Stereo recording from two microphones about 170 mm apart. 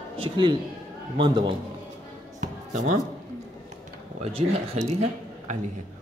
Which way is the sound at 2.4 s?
45° right (ahead or behind).